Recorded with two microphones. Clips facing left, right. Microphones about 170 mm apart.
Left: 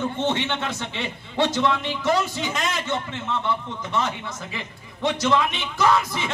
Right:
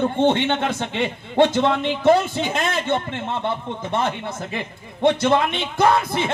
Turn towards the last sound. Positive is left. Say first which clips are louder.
# right 3 dB
turn(degrees=-55)  # may be behind; listen again after turning